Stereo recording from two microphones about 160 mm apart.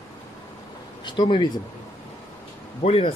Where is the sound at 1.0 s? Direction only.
30° left (ahead or behind).